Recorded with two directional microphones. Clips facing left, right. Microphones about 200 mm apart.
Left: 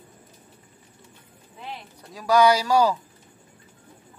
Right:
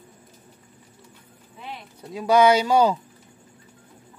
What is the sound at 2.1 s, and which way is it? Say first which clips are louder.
Speech: right 2 dB; 25° right (ahead or behind).